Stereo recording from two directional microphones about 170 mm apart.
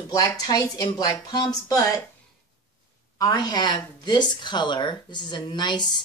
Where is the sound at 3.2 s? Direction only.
20° left (ahead or behind).